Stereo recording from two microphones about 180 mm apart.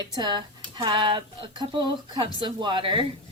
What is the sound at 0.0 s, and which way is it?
A woman's voice, 25° right (ahead or behind).